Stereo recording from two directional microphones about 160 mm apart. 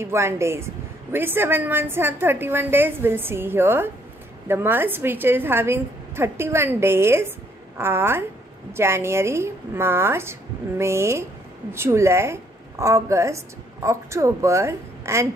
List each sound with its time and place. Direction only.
0.0 s a woman's voice: 15° right (ahead or behind)